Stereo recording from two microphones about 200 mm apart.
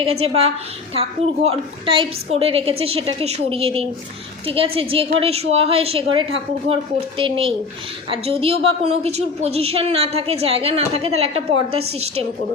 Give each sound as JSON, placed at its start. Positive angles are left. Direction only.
{"t": 0.0, "sound": "a woman's voice", "side_deg": -30}